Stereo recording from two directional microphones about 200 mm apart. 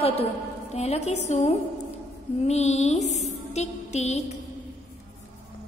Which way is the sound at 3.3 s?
35° left (ahead or behind).